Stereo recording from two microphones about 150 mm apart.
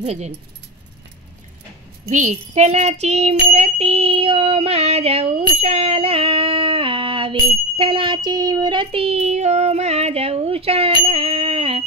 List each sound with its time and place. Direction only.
0.0 s child singing: 45° right (ahead or behind)
2.0 s child singing: 50° right (ahead or behind)
5.6 s female singing: 40° right (ahead or behind)
11.1 s a sound: 40° right (ahead or behind)